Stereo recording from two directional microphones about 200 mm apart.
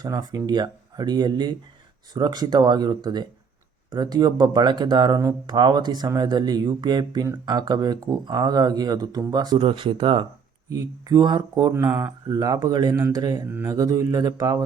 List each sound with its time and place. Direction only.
0.0 s speech: 20° right (ahead or behind)